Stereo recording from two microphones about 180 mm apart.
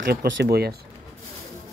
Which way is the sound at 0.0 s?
60° right (ahead or behind).